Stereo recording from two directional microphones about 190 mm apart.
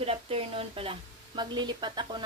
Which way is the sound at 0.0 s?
30° right (ahead or behind).